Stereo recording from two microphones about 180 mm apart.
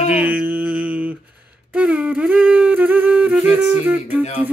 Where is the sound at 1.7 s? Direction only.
10° right (ahead or behind).